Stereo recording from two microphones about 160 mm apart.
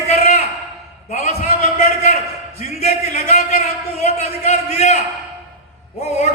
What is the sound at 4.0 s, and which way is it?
Speech, 40° left (ahead or behind).